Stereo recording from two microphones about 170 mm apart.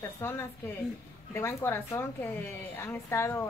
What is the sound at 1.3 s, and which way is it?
A woman's voice, 15° left (ahead or behind).